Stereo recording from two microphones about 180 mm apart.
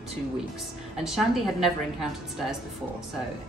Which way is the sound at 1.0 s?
Centre (ahead or behind).